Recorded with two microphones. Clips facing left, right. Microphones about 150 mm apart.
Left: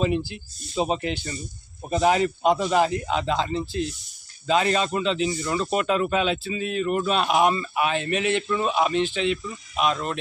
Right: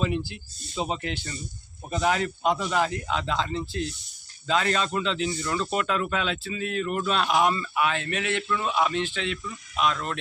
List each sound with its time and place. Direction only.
0.0 s speech: 15° left (ahead or behind)